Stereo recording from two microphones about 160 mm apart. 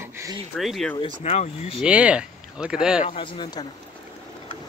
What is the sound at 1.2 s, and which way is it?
Speech, 45° left (ahead or behind).